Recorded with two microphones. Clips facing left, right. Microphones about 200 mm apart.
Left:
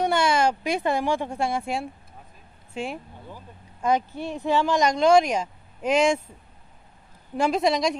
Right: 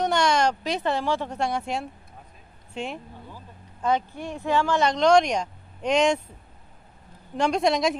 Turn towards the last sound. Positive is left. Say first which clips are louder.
# even
turn(degrees=0)  # may be behind; listen again after turning